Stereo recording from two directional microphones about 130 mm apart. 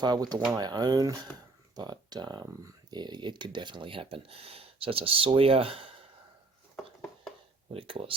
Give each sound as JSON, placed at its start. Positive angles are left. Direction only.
{"t": 0.0, "sound": "speech", "side_deg": -30}
{"t": 7.7, "sound": "speech", "side_deg": -45}